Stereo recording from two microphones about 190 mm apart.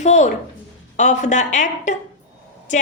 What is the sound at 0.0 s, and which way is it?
A woman's voice, 40° left (ahead or behind).